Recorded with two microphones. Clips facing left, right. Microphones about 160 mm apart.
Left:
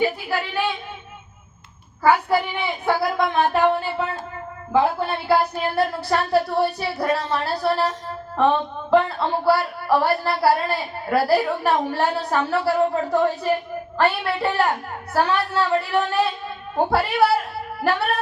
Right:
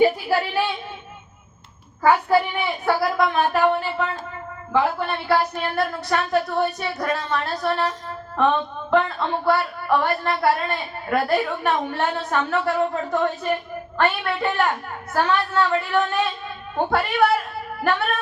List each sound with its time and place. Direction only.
0.0 s speech: 10° right (ahead or behind)
2.8 s speech: 25° left (ahead or behind)